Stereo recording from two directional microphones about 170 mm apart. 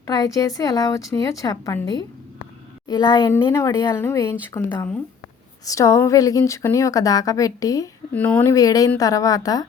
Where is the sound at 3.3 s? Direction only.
15° left (ahead or behind).